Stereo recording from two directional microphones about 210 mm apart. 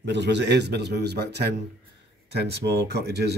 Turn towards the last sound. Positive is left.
turn(degrees=-50)  # may be behind; listen again after turning